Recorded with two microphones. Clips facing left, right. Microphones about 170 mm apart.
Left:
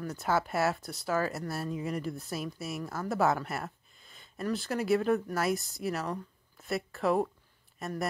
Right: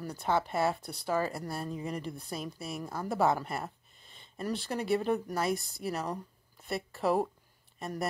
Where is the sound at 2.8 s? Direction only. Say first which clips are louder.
Even; 15° right (ahead or behind).